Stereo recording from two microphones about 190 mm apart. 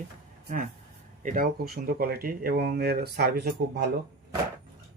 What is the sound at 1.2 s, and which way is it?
Speech, 50° right (ahead or behind).